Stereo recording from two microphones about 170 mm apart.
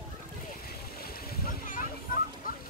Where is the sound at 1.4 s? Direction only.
50° left (ahead or behind).